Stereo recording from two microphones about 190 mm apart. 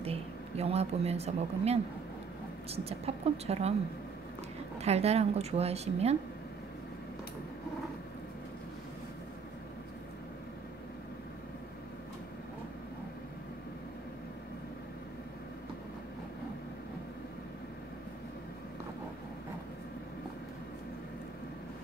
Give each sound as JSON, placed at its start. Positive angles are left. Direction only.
{"t": 0.0, "sound": "speech", "side_deg": -30}
{"t": 4.7, "sound": "speech", "side_deg": -35}